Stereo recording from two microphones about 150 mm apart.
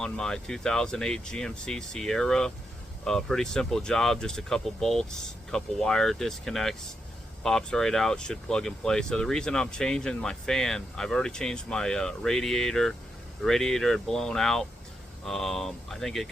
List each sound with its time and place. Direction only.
0.0 s speech: 5° left (ahead or behind)